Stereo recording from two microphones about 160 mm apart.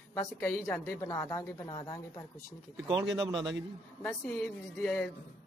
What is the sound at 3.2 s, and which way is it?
Speech, 25° right (ahead or behind).